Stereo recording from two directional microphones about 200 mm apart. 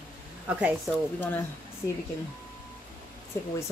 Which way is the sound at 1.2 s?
10° left (ahead or behind).